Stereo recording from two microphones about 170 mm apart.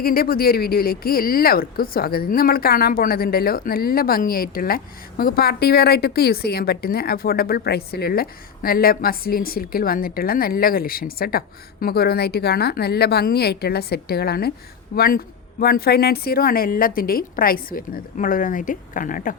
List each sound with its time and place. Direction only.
0.0 s speech: 60° left (ahead or behind)